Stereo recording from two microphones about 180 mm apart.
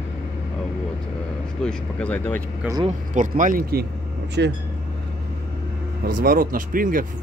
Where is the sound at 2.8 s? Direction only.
45° right (ahead or behind).